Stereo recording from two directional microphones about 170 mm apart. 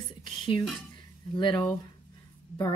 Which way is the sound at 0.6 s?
Centre (ahead or behind).